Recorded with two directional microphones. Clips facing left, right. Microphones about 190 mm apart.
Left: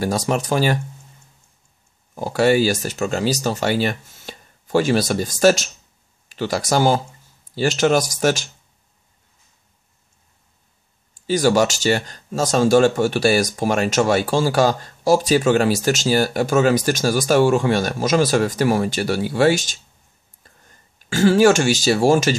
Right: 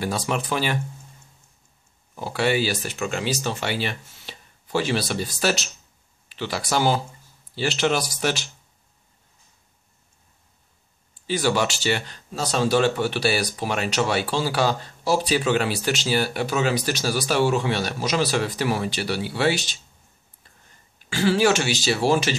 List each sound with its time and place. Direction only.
0.0 s speech: 40° left (ahead or behind)
2.1 s speech: 40° left (ahead or behind)
11.2 s speech: 45° left (ahead or behind)
21.1 s speech: 45° left (ahead or behind)